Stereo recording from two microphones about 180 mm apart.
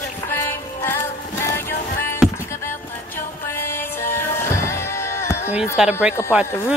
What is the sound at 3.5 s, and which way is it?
Music, 10° left (ahead or behind).